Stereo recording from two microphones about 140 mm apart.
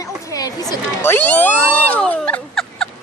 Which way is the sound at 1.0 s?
15° left (ahead or behind).